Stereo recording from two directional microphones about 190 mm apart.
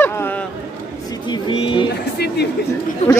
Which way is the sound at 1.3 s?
25° left (ahead or behind).